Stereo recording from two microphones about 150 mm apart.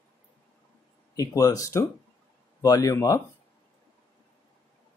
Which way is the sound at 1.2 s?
25° left (ahead or behind).